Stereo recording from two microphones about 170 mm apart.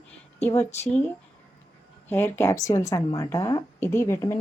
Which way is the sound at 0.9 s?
10° left (ahead or behind).